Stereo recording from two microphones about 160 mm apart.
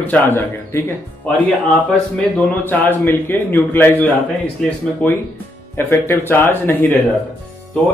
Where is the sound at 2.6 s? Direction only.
10° left (ahead or behind).